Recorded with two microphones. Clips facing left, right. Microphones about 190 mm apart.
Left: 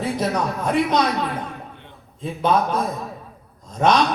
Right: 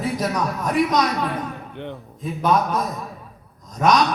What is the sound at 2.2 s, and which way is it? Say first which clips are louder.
Speech: even; 30° left (ahead or behind).